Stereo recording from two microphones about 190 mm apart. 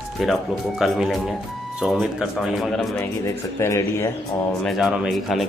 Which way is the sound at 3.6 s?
15° left (ahead or behind).